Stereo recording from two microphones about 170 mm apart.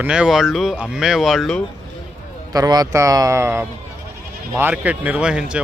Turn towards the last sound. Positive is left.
turn(degrees=-5)  # may be behind; listen again after turning